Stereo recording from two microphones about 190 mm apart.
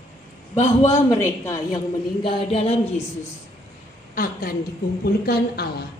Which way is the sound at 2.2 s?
30° left (ahead or behind).